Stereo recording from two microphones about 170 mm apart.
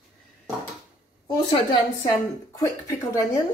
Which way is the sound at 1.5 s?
25° left (ahead or behind).